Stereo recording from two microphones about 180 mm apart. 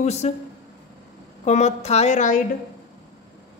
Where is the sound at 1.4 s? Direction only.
40° left (ahead or behind).